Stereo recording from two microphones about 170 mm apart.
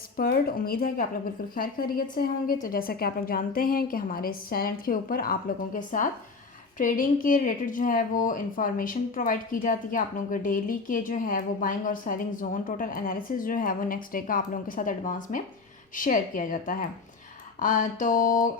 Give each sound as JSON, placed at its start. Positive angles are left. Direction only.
{"t": 0.2, "sound": "a woman's voice", "side_deg": 60}